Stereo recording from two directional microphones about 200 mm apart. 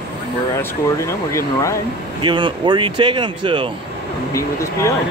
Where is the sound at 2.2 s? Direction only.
25° right (ahead or behind).